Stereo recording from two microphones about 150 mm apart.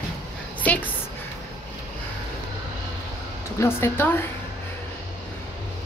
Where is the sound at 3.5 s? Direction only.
15° left (ahead or behind).